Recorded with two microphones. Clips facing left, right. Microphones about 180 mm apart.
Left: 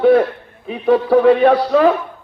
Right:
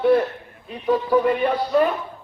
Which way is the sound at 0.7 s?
65° left (ahead or behind).